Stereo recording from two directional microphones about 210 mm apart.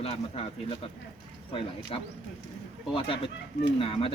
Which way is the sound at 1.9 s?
25° left (ahead or behind).